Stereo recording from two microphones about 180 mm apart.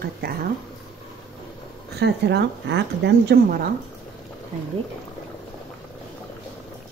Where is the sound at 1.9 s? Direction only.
70° right (ahead or behind).